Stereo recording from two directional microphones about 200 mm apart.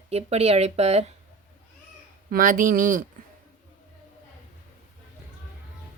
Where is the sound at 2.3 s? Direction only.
40° right (ahead or behind).